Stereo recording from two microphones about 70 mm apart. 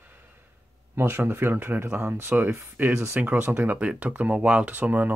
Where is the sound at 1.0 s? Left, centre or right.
Right.